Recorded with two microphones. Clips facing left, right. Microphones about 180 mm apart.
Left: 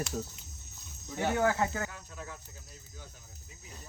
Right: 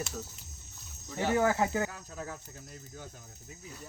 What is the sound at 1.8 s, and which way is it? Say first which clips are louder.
Speech: right 4 dB; 40° right (ahead or behind).